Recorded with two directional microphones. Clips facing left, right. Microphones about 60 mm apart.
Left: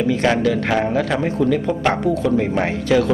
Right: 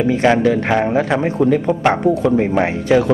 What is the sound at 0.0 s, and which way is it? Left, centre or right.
A man's voice, right.